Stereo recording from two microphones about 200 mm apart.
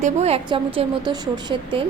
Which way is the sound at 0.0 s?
30° right (ahead or behind).